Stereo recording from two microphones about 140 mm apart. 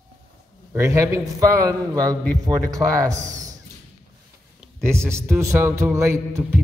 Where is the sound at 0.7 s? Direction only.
20° right (ahead or behind).